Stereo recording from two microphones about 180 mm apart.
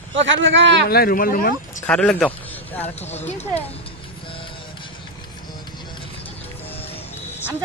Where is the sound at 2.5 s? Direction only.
10° left (ahead or behind).